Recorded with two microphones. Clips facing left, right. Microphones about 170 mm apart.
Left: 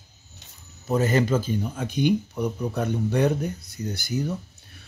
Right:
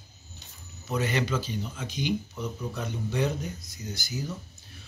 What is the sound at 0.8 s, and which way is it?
Speech, 45° left (ahead or behind).